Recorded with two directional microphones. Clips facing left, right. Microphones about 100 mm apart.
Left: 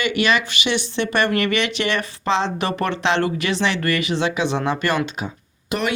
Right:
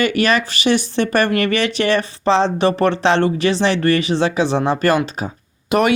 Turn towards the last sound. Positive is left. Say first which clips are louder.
# right 8 dB
turn(degrees=-65)  # may be behind; listen again after turning